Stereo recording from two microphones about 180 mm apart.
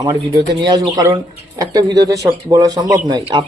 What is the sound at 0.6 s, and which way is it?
Speech, 20° right (ahead or behind).